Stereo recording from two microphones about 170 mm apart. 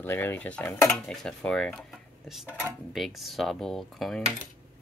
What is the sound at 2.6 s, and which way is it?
Cutlery, centre (ahead or behind).